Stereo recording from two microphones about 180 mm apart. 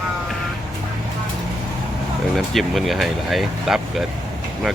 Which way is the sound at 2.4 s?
Centre (ahead or behind).